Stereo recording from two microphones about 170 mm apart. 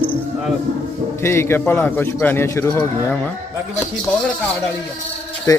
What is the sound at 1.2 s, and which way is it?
A man's voice, 15° left (ahead or behind).